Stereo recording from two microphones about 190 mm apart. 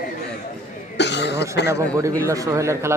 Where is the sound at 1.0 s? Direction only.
65° left (ahead or behind).